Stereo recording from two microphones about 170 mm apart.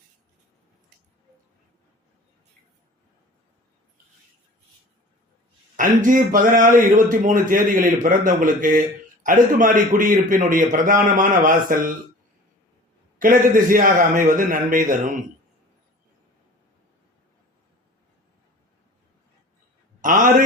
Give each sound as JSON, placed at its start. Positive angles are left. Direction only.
{"t": 5.7, "sound": "a man's voice", "side_deg": -50}
{"t": 13.1, "sound": "a man's voice", "side_deg": -50}
{"t": 20.0, "sound": "a man's voice", "side_deg": -50}